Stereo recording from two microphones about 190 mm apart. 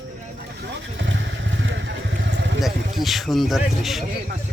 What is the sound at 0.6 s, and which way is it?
Vehicle, 70° right (ahead or behind).